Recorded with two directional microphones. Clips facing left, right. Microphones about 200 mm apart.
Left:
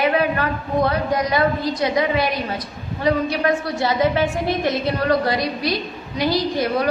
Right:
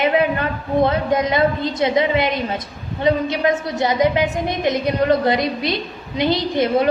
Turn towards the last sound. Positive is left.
turn(degrees=-25)  # may be behind; listen again after turning